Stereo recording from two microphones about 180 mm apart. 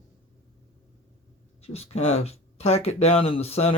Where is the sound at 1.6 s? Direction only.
35° left (ahead or behind).